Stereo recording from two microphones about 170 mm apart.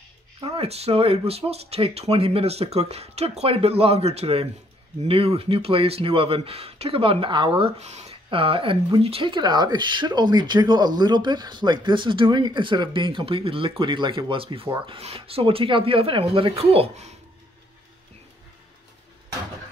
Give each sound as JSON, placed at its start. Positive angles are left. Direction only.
{"t": 0.4, "sound": "speech", "side_deg": -35}